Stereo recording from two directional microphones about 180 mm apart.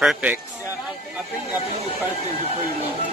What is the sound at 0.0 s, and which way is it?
Speech, 5° right (ahead or behind).